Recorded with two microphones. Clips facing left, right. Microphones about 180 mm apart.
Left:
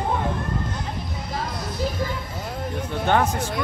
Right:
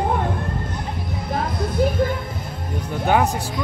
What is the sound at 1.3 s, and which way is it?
Music, 55° right (ahead or behind).